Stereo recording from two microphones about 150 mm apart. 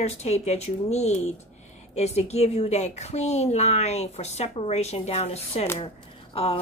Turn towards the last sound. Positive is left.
turn(degrees=40)  # may be behind; listen again after turning